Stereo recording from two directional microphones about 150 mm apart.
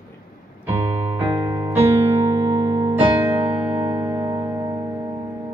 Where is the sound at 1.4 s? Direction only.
25° right (ahead or behind).